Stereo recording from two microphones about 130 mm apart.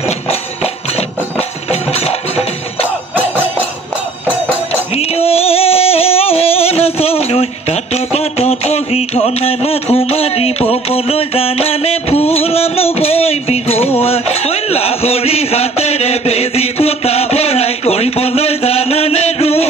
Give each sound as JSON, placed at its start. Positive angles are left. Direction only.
{"t": 1.7, "sound": "music", "side_deg": 50}
{"t": 4.9, "sound": "singing", "side_deg": 50}